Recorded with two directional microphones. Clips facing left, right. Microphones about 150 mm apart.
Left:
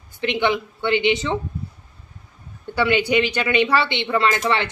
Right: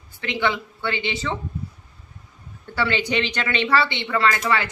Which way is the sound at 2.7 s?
15° left (ahead or behind).